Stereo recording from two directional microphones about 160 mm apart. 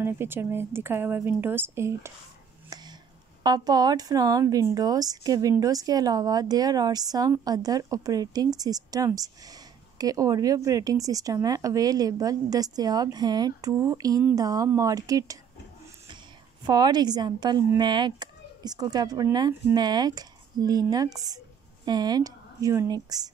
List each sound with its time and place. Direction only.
0.0 s speech: 15° right (ahead or behind)
2.7 s a sound: 25° right (ahead or behind)
3.4 s a woman's voice: 25° right (ahead or behind)
16.6 s a woman's voice: 25° right (ahead or behind)